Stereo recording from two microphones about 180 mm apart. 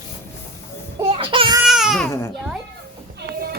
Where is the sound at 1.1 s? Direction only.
30° right (ahead or behind).